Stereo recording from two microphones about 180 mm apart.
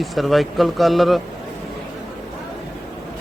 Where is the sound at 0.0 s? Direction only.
Centre (ahead or behind).